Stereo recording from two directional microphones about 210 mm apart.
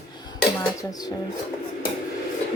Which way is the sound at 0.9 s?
15° left (ahead or behind).